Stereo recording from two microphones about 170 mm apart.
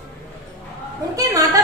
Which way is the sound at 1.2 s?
20° right (ahead or behind).